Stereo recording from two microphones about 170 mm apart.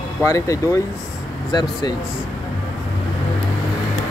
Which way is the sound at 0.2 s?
15° left (ahead or behind).